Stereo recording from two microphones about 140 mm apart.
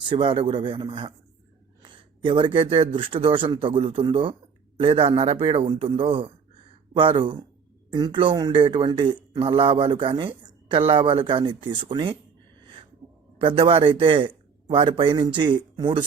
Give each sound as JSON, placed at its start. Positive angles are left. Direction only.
{"t": 0.1, "sound": "speech", "side_deg": -40}
{"t": 13.4, "sound": "speech", "side_deg": -40}